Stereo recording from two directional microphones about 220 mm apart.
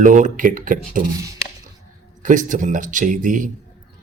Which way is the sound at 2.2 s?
35° right (ahead or behind).